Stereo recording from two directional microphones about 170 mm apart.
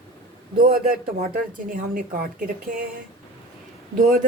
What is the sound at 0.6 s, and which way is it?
A woman's voice, 60° right (ahead or behind).